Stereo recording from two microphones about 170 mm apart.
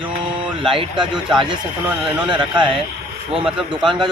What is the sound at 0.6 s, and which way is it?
Speech, 30° right (ahead or behind).